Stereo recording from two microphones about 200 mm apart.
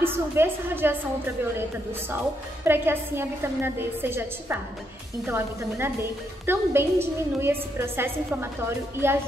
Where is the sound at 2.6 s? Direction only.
10° right (ahead or behind).